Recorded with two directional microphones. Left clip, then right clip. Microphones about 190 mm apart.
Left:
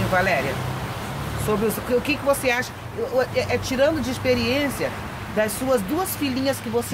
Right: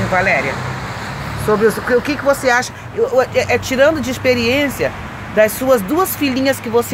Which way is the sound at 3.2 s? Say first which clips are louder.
Right 6 dB; 35° right (ahead or behind).